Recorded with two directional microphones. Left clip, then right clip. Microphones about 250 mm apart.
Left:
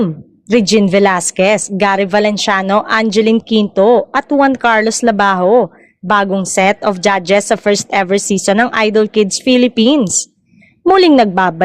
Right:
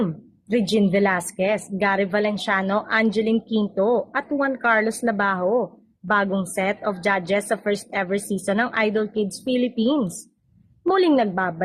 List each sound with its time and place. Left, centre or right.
0.5 s a woman's voice: left